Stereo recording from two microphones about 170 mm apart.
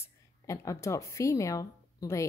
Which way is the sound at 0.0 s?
20° left (ahead or behind).